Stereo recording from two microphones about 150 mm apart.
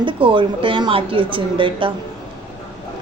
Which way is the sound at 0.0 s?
35° right (ahead or behind).